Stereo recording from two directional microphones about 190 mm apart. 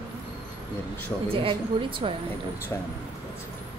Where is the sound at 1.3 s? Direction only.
30° right (ahead or behind).